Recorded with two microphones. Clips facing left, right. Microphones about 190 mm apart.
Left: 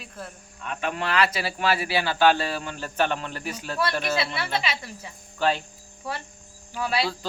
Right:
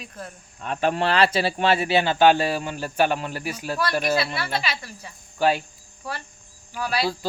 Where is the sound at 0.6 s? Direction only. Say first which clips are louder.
Right 6 dB; 35° right (ahead or behind); by 4.2 s 10° right (ahead or behind).